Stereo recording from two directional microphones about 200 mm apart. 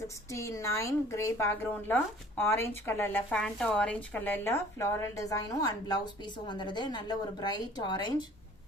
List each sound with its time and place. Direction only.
0.3 s a woman's voice: 15° left (ahead or behind)